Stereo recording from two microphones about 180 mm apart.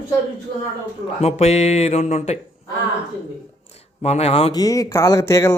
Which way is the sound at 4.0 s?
35° left (ahead or behind).